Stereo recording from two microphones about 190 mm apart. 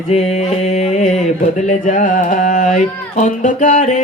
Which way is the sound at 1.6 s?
40° left (ahead or behind).